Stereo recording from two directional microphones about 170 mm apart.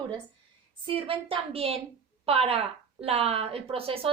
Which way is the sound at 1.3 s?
35° right (ahead or behind).